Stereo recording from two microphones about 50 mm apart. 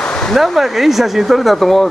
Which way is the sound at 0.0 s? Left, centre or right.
Centre.